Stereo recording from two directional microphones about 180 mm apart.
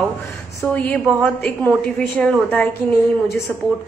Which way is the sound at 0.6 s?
5° left (ahead or behind).